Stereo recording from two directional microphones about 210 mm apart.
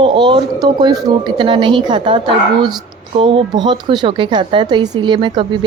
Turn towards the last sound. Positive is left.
turn(degrees=-25)  # may be behind; listen again after turning